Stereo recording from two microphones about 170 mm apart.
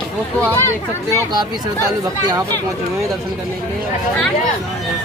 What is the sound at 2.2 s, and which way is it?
Speech, 25° right (ahead or behind).